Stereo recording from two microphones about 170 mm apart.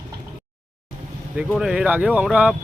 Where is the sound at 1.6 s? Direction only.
5° right (ahead or behind).